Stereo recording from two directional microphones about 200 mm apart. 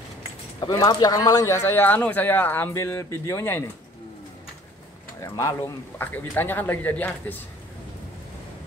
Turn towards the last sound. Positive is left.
turn(degrees=10)  # may be behind; listen again after turning